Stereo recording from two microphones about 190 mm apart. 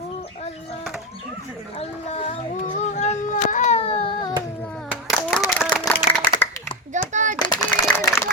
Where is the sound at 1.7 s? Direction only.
30° left (ahead or behind).